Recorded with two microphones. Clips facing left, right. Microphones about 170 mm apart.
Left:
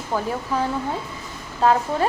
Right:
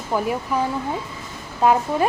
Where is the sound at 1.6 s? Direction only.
15° right (ahead or behind).